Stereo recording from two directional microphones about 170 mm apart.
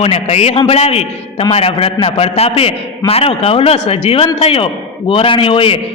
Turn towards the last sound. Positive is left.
turn(degrees=30)  # may be behind; listen again after turning